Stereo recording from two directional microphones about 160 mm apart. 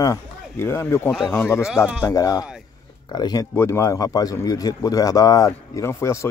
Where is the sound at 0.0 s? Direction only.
15° left (ahead or behind).